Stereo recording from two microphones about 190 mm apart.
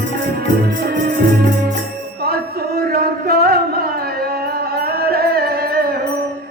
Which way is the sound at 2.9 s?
55° right (ahead or behind).